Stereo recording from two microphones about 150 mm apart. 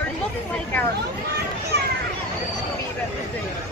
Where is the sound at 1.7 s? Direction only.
90° right.